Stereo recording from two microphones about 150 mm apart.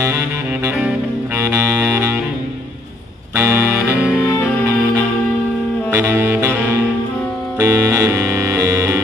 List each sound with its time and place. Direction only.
3.3 s music: 15° right (ahead or behind)
5.9 s saxophone: 15° right (ahead or behind)
7.5 s music: 20° right (ahead or behind)